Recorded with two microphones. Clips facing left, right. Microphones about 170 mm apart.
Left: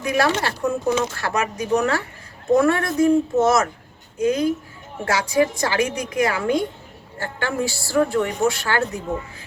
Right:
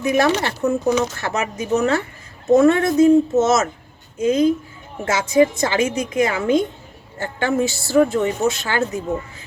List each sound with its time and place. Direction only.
0.0 s speech: 25° right (ahead or behind)